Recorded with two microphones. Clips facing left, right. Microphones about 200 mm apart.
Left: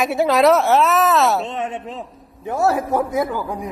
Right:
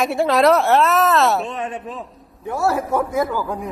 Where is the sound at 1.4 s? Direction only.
25° left (ahead or behind).